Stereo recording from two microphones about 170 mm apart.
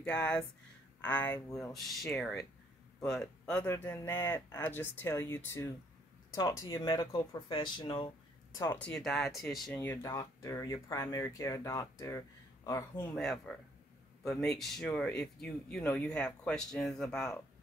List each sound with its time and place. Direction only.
0.0 s speech: 5° left (ahead or behind); by 8.1 s 25° left (ahead or behind)
8.5 s speech: 10° left (ahead or behind)
9.8 s speech: 15° left (ahead or behind)
13.1 s speech: 5° left (ahead or behind)